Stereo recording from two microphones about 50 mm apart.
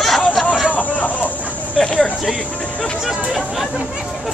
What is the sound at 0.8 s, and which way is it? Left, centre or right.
Vehicle, left.